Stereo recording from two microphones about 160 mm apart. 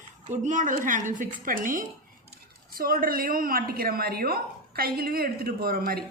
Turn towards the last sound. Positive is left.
turn(degrees=-70)  # may be behind; listen again after turning